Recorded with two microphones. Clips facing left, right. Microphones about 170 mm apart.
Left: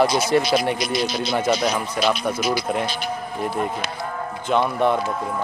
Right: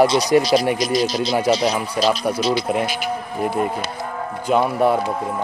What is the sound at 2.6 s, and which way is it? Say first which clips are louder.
Speech: right 3 dB; 10° right (ahead or behind).